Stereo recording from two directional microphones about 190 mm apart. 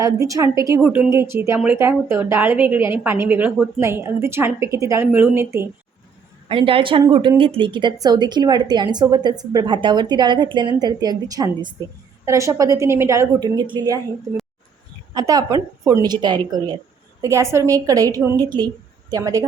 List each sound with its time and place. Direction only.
0.0 s a woman's voice: 15° right (ahead or behind)
6.5 s a woman's voice: 30° right (ahead or behind)
15.1 s a woman's voice: 20° right (ahead or behind)